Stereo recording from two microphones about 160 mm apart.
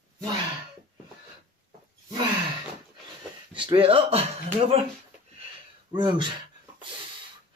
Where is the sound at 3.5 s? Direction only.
30° right (ahead or behind).